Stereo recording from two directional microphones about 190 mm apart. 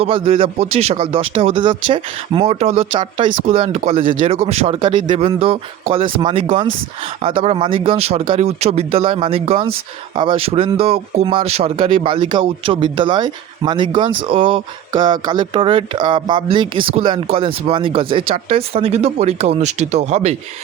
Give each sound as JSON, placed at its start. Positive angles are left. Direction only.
{"t": 0.0, "sound": "speech", "side_deg": -30}